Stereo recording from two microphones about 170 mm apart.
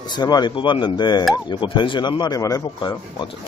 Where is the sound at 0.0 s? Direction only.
25° left (ahead or behind).